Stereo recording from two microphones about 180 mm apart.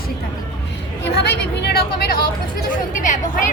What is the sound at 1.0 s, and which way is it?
Speech, 70° left (ahead or behind).